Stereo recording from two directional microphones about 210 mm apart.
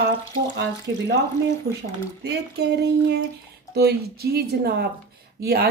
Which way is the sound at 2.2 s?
50° right (ahead or behind).